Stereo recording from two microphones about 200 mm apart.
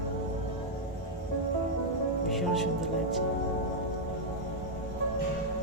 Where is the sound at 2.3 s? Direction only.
Centre (ahead or behind).